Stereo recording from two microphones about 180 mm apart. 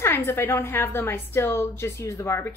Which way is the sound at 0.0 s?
15° left (ahead or behind).